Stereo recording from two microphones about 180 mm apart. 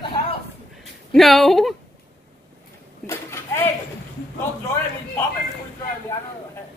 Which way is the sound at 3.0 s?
15° left (ahead or behind).